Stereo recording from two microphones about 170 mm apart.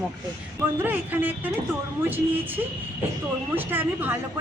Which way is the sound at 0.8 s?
10° right (ahead or behind).